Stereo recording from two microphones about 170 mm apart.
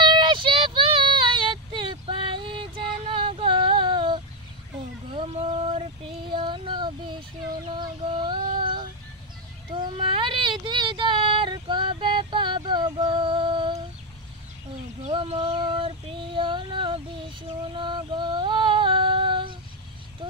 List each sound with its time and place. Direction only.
0.1 s child singing: 30° right (ahead or behind)
5.1 s female singing: 35° right (ahead or behind)
9.8 s child singing: 30° right (ahead or behind)
15.0 s child singing: 40° right (ahead or behind)